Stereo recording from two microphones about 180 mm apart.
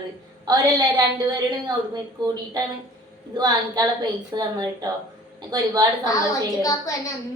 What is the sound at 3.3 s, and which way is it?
A woman's voice, 20° right (ahead or behind).